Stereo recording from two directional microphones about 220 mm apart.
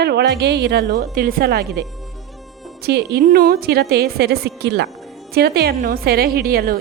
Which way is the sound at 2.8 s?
50° right (ahead or behind).